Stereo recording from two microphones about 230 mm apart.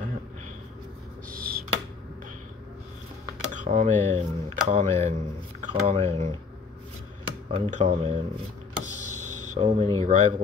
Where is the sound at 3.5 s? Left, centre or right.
Right.